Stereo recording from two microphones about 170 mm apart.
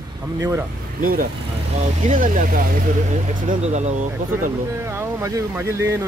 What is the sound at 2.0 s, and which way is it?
Speech, 50° right (ahead or behind).